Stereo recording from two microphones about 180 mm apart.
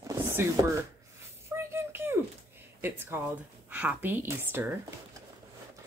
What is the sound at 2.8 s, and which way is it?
Speech, 10° right (ahead or behind).